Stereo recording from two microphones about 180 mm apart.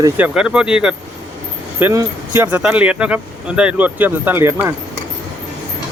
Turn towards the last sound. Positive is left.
turn(degrees=-15)  # may be behind; listen again after turning